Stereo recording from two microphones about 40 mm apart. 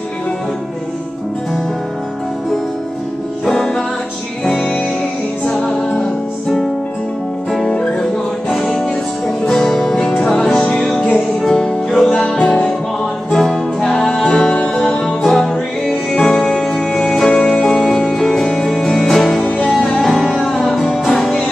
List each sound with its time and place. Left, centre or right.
5.7 s music: centre
7.7 s music: centre
13.3 s music: centre
14.3 s music: left; by 21.5 s centre